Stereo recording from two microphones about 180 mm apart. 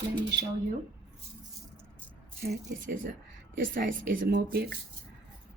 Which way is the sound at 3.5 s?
50° right (ahead or behind).